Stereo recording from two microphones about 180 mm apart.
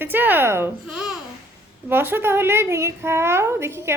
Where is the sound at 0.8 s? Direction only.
5° right (ahead or behind).